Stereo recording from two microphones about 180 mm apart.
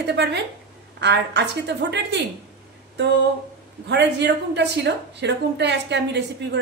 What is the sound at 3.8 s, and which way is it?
A woman's voice, 70° right (ahead or behind).